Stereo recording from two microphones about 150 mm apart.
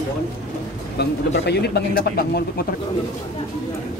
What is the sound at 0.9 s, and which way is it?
Speech, 90° left.